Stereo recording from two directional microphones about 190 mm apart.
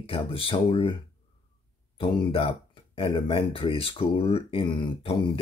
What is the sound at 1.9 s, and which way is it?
Speech, 30° left (ahead or behind).